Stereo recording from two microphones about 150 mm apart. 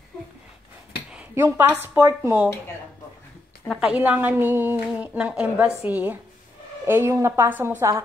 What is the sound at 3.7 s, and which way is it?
A woman's voice, 5° right (ahead or behind).